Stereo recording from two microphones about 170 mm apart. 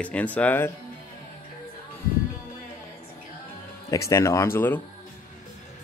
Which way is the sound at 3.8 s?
20° left (ahead or behind).